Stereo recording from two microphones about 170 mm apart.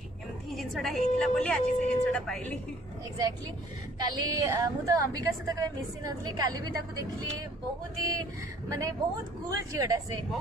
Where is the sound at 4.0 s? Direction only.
25° right (ahead or behind).